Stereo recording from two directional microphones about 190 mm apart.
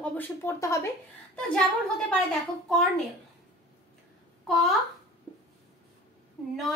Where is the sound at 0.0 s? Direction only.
10° left (ahead or behind).